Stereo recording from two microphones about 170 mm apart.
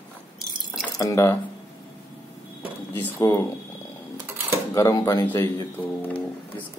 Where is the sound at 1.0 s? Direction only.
20° left (ahead or behind).